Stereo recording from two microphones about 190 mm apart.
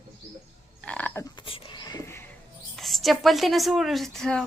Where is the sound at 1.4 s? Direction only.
25° left (ahead or behind).